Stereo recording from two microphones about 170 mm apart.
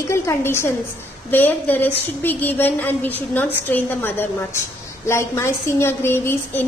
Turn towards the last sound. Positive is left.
turn(degrees=15)  # may be behind; listen again after turning